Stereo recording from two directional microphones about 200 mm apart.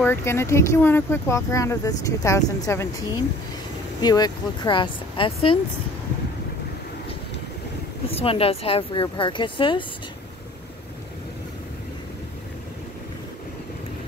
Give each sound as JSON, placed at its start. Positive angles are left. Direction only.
{"t": 0.0, "sound": "speech", "side_deg": 10}
{"t": 8.1, "sound": "speech", "side_deg": 30}